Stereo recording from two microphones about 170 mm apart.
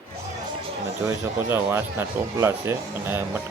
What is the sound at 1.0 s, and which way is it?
Speech, 15° right (ahead or behind).